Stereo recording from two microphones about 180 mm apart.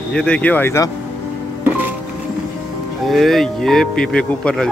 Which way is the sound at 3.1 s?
Centre (ahead or behind).